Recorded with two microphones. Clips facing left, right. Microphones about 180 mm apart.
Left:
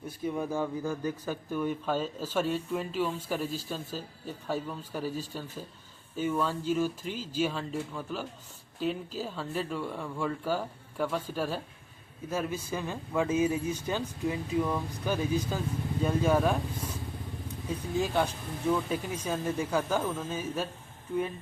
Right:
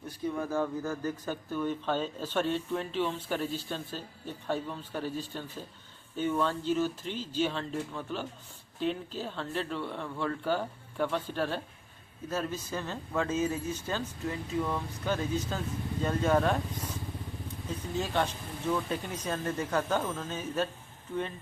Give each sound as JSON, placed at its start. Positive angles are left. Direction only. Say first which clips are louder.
{"t": 0.3, "sound": "speech", "louder": "even", "side_deg": 15}